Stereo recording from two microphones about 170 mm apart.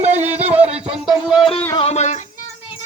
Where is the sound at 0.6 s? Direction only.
35° right (ahead or behind).